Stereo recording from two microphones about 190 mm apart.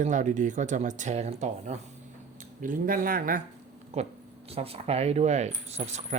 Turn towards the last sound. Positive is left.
turn(degrees=-35)  # may be behind; listen again after turning